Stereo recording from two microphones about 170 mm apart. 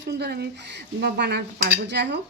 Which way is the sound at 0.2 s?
70° right (ahead or behind).